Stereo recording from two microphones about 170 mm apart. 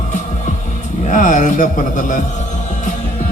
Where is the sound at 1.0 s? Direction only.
50° left (ahead or behind).